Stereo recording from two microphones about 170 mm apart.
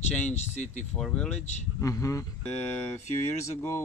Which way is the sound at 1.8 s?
20° left (ahead or behind).